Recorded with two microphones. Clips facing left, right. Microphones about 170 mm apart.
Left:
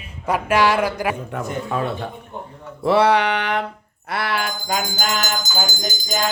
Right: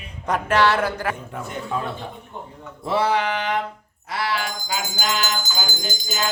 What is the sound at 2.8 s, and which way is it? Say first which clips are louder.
Music: left 5 dB; 70° left (ahead or behind).